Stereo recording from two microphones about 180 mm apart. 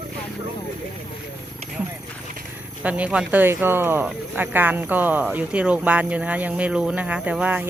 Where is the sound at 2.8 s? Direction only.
5° right (ahead or behind).